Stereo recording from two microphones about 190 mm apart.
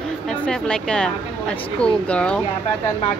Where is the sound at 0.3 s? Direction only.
5° left (ahead or behind).